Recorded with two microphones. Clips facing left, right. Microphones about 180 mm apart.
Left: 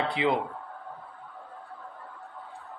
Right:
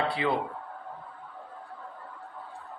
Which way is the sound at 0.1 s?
20° left (ahead or behind).